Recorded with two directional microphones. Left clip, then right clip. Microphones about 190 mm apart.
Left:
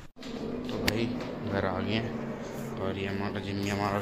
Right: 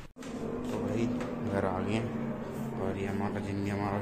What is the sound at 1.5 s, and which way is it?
Speech, centre (ahead or behind).